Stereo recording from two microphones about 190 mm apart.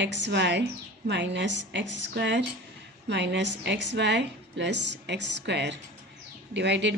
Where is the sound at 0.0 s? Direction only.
70° right (ahead or behind).